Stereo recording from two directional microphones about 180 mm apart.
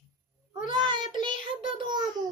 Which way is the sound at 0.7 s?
25° right (ahead or behind).